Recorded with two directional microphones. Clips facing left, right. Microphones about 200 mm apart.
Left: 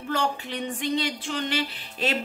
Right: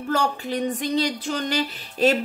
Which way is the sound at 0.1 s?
40° right (ahead or behind).